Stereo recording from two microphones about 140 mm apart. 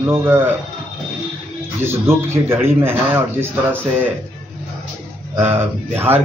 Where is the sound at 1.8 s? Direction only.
20° right (ahead or behind).